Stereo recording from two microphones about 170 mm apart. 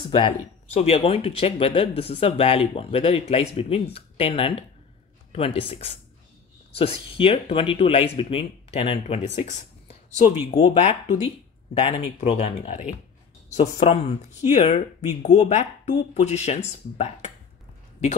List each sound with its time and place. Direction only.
0.0 s speech: 30° left (ahead or behind)